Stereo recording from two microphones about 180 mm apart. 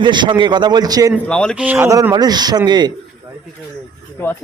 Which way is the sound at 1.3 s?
5° left (ahead or behind).